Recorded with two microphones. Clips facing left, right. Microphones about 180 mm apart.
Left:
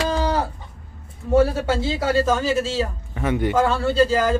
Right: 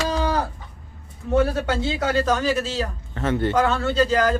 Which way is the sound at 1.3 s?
5° left (ahead or behind).